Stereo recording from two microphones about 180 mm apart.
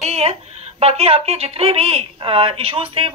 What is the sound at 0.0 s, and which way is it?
Speech, 35° right (ahead or behind).